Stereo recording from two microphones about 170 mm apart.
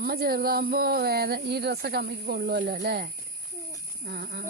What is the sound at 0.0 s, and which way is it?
Speech, 60° right (ahead or behind).